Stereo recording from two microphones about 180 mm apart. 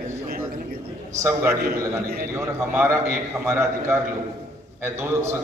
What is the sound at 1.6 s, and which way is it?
Speech, 55° right (ahead or behind).